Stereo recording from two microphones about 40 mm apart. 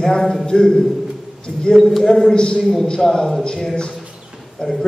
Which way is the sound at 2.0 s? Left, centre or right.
Centre.